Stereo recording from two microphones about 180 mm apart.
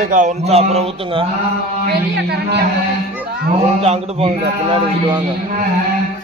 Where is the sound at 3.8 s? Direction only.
35° right (ahead or behind).